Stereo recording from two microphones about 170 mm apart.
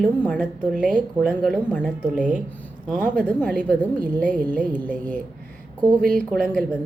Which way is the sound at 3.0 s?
10° left (ahead or behind).